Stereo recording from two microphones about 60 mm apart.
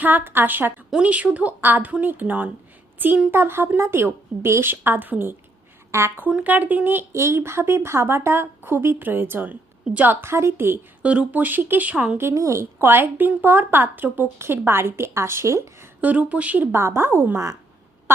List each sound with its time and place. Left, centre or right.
0.0 s a woman's voice: right
1.0 s a woman's voice: right
3.3 s a woman's voice: right
5.9 s a woman's voice: right
6.4 s a woman's voice: right
7.1 s a woman's voice: right
9.0 s a woman's voice: right
10.2 s a woman's voice: right
11.0 s a woman's voice: right
12.3 s a woman's voice: right
12.8 s a woman's voice: right
16.0 s a woman's voice: right
16.7 s a woman's voice: right
17.3 s a woman's voice: right